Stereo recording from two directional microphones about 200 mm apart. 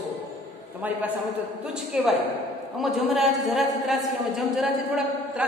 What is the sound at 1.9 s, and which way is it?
A woman's voice, 5° right (ahead or behind).